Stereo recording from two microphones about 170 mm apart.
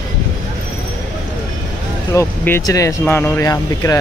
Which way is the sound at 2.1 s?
15° left (ahead or behind).